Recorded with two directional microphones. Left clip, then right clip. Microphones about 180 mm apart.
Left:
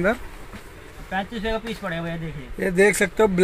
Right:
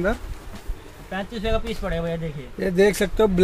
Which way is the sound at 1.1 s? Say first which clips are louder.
Even; 15° right (ahead or behind).